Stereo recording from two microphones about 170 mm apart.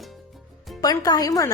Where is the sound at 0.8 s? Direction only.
20° left (ahead or behind).